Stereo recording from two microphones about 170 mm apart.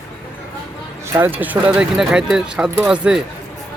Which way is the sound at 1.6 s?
5° right (ahead or behind).